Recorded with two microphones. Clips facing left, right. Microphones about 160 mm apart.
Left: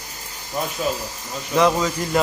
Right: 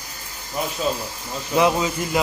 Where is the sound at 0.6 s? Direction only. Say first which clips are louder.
Even; 10° right (ahead or behind).